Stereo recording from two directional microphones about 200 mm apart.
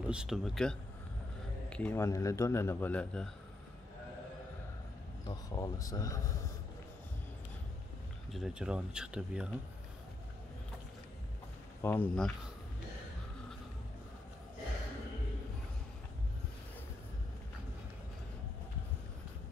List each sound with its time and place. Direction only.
0.1 s a man's voice: 5° right (ahead or behind)
5.2 s a man's voice: 20° left (ahead or behind)
8.3 s speech: centre (ahead or behind)
11.8 s a man's voice: 10° left (ahead or behind)